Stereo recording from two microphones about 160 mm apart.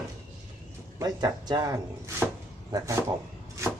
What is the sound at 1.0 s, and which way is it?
Speech, 25° right (ahead or behind).